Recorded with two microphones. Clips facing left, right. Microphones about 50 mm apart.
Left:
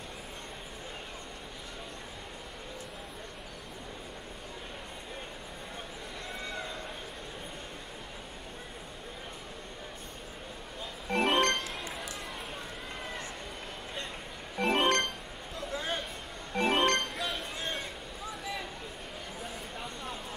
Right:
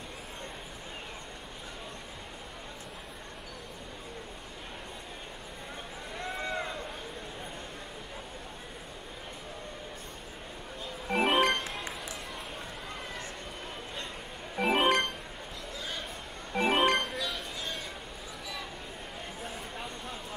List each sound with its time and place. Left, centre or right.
11.1 s music: centre
14.5 s music: centre
15.7 s a sound: left
16.5 s music: centre
17.2 s chink: left